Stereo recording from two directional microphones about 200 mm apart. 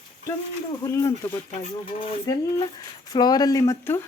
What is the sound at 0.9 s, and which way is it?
A woman's voice, 15° left (ahead or behind).